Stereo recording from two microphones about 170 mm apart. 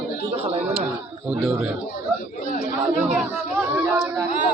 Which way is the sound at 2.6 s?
5° right (ahead or behind).